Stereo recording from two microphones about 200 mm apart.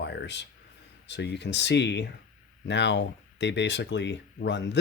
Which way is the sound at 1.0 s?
60° left (ahead or behind).